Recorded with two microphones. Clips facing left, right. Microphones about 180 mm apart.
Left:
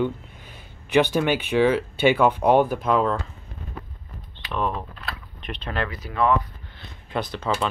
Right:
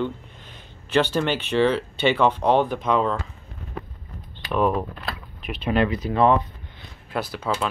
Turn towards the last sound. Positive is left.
turn(degrees=-10)  # may be behind; listen again after turning